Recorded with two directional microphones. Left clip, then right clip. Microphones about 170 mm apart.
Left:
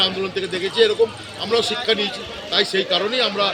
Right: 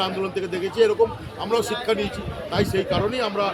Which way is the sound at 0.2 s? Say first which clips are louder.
Left 2 dB; 15° right (ahead or behind).